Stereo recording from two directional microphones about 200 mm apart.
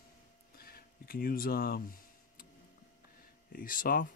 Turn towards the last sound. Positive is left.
turn(degrees=45)  # may be behind; listen again after turning